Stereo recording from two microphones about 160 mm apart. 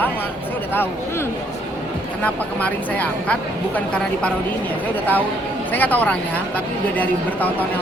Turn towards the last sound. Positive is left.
turn(degrees=10)  # may be behind; listen again after turning